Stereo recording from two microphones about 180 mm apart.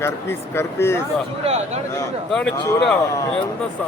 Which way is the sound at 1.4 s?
40° right (ahead or behind).